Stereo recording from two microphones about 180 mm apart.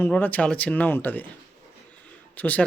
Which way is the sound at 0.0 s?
10° left (ahead or behind).